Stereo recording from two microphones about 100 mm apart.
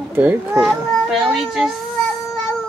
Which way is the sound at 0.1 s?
20° right (ahead or behind).